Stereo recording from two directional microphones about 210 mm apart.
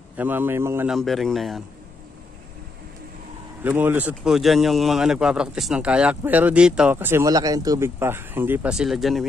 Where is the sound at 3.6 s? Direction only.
10° right (ahead or behind).